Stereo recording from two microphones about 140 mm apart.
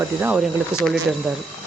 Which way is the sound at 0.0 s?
15° right (ahead or behind).